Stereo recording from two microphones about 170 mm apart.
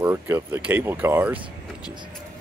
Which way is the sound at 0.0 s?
10° right (ahead or behind).